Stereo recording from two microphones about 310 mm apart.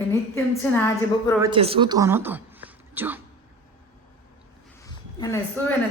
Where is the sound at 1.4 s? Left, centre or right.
Centre.